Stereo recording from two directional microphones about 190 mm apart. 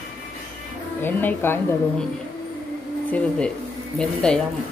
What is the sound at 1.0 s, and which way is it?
A woman's voice, 10° left (ahead or behind).